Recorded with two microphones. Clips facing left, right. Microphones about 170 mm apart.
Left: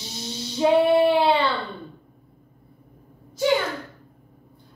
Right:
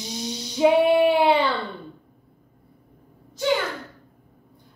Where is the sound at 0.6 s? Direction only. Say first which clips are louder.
Even; 15° right (ahead or behind).